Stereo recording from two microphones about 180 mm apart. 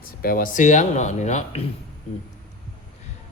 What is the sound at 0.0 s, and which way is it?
Speech, 55° left (ahead or behind).